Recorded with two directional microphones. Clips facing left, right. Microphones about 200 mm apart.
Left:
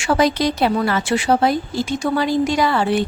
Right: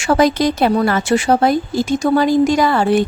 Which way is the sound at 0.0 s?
45° right (ahead or behind).